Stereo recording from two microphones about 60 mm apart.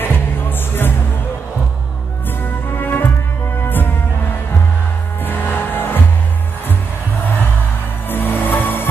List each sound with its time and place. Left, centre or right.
0.0 s music: left
2.7 s music: left
5.2 s music: left
8.1 s music: left